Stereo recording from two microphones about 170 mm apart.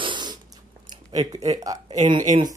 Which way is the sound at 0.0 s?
25° right (ahead or behind).